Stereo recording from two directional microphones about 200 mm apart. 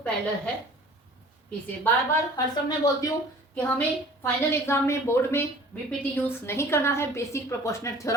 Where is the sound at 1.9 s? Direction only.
10° left (ahead or behind).